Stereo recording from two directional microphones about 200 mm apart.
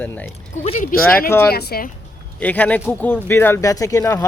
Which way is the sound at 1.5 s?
50° left (ahead or behind).